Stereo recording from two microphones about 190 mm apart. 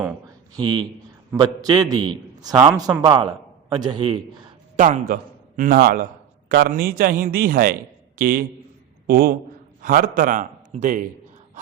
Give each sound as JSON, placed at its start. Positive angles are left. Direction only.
{"t": 0.5, "sound": "a man's voice", "side_deg": -25}
{"t": 4.8, "sound": "a man's voice", "side_deg": -45}